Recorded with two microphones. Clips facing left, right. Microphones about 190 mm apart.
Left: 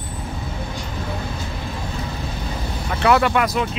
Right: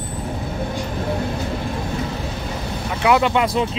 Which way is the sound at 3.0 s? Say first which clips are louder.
Even; 15° right (ahead or behind).